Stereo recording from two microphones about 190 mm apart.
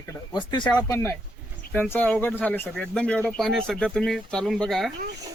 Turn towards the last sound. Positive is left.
turn(degrees=0)  # may be behind; listen again after turning